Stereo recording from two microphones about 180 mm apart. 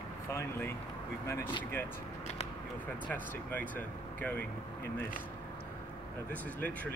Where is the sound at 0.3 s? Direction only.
15° left (ahead or behind).